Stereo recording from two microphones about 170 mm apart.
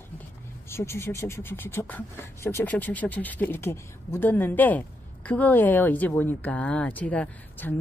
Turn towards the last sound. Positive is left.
turn(degrees=10)  # may be behind; listen again after turning